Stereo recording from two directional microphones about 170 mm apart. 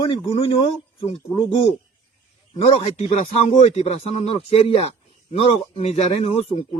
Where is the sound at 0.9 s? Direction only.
30° left (ahead or behind).